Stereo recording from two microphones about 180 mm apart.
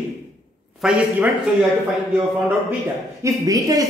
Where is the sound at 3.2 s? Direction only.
20° right (ahead or behind).